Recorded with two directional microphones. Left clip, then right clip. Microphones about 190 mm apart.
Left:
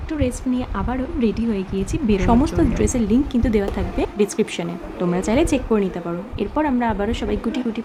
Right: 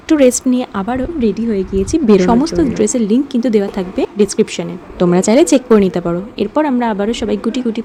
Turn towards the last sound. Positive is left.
turn(degrees=-30)  # may be behind; listen again after turning